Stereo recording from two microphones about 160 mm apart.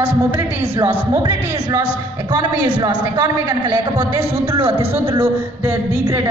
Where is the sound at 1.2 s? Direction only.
25° right (ahead or behind).